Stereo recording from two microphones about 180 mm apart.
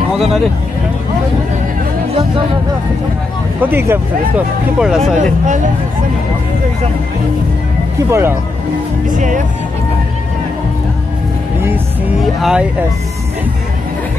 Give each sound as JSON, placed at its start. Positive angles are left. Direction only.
{"t": 0.1, "sound": "speech", "side_deg": 0}
{"t": 3.6, "sound": "speech", "side_deg": -10}
{"t": 8.1, "sound": "speech", "side_deg": -15}
{"t": 9.1, "sound": "speech", "side_deg": -45}
{"t": 12.2, "sound": "speech", "side_deg": 0}